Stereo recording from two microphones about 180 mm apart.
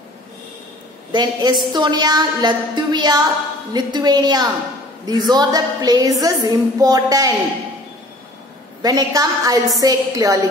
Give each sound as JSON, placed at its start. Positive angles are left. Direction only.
{"t": 1.1, "sound": "a woman's voice", "side_deg": -25}
{"t": 8.8, "sound": "a woman's voice", "side_deg": -20}